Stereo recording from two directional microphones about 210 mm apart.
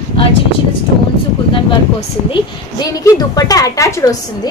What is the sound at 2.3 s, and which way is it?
A woman's voice, 15° left (ahead or behind).